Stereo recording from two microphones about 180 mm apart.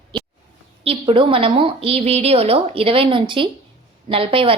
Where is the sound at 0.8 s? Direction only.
30° right (ahead or behind).